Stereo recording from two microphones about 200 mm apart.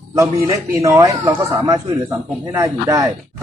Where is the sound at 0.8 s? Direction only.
15° right (ahead or behind).